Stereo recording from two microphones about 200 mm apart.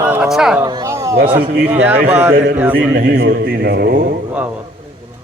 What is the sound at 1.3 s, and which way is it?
Speech, 50° right (ahead or behind).